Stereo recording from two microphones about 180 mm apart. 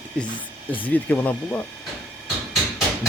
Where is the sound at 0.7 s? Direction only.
10° left (ahead or behind).